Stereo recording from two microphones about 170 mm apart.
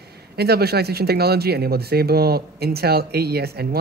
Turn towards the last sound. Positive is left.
turn(degrees=-70)  # may be behind; listen again after turning